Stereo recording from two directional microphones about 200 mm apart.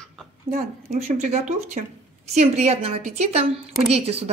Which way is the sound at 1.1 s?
35° right (ahead or behind).